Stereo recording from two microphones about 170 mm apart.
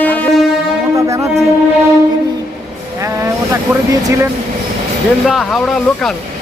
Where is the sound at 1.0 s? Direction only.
20° right (ahead or behind).